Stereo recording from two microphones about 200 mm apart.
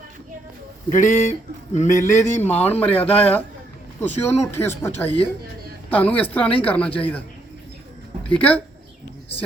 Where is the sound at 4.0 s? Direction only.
10° left (ahead or behind).